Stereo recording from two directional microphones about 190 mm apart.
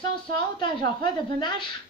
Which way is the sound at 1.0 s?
25° left (ahead or behind).